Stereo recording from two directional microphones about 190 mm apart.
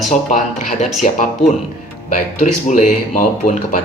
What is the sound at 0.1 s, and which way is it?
Speech, 40° left (ahead or behind).